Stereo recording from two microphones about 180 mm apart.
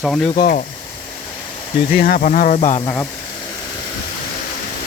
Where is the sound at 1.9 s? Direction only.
55° left (ahead or behind).